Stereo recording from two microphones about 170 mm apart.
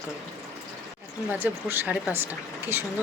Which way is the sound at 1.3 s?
10° right (ahead or behind).